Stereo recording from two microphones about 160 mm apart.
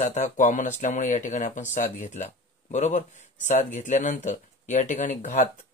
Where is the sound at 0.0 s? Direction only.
50° left (ahead or behind).